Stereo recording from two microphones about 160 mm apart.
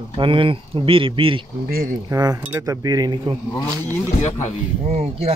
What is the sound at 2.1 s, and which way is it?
Speech, 20° right (ahead or behind).